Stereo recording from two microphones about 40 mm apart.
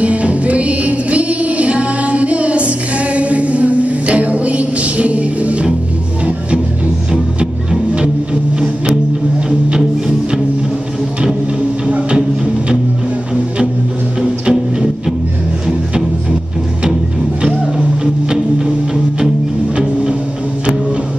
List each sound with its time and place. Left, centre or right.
0.0 s music: right
9.8 s music: centre
14.2 s music: right
17.4 s music: right